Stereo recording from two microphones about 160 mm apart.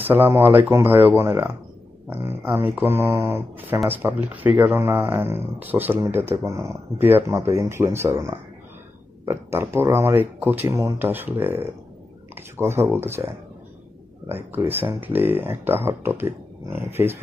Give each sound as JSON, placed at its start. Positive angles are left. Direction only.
{"t": 0.0, "sound": "speech", "side_deg": -15}
{"t": 14.3, "sound": "speech", "side_deg": -15}